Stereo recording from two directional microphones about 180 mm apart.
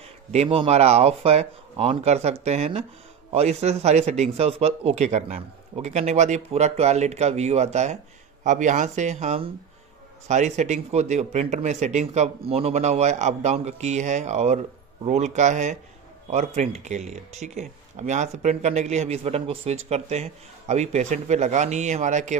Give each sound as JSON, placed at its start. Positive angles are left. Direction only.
{"t": 0.3, "sound": "speech", "side_deg": -35}